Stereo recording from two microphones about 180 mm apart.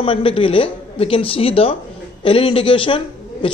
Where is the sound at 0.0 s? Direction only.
30° left (ahead or behind).